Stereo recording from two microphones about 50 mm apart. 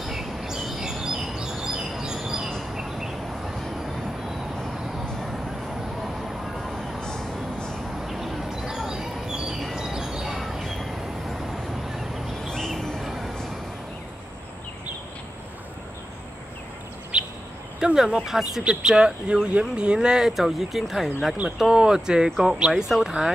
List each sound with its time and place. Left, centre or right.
0.0 s bird: centre
2.2 s a sound: centre
6.0 s a sound: centre
7.0 s vehicle: centre
7.9 s a sound: centre
9.8 s vehicle: centre
12.4 s a sound: centre
13.0 s vehicle: centre
17.1 s bird: right
17.7 s speech: centre
18.6 s speech: centre
22.8 s speech: centre